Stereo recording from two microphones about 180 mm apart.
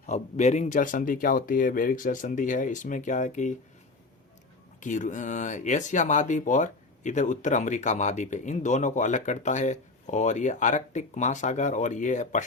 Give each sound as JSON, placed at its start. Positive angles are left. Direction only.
{"t": 0.0, "sound": "speech", "side_deg": 40}
{"t": 4.8, "sound": "speech", "side_deg": 45}